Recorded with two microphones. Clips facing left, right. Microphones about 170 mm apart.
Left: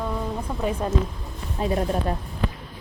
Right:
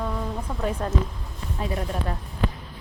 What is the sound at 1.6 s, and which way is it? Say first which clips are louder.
Speech: left 5 dB; 30° left (ahead or behind).